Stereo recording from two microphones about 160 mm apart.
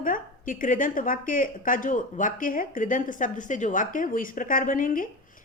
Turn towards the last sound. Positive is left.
turn(degrees=60)  # may be behind; listen again after turning